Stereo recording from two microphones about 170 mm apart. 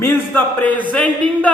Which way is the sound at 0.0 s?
10° left (ahead or behind).